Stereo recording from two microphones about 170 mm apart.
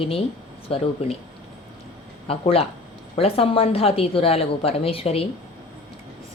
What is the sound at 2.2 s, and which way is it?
A woman's voice, 35° left (ahead or behind).